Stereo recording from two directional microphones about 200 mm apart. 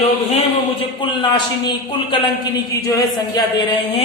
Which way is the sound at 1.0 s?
25° left (ahead or behind).